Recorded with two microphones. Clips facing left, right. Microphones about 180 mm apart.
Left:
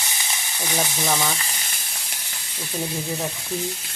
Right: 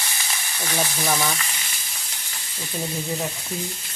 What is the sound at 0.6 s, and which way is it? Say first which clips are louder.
Speech: even; 15° left (ahead or behind).